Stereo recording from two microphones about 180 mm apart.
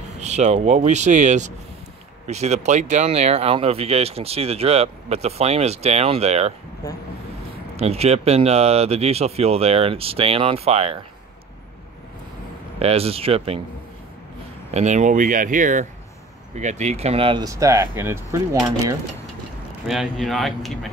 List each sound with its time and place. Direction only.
0.2 s speech: 40° right (ahead or behind)
7.7 s speech: 35° right (ahead or behind)
12.7 s speech: 35° right (ahead or behind)
14.7 s speech: 40° right (ahead or behind); by 18.9 s 15° right (ahead or behind)
19.9 s speech: centre (ahead or behind)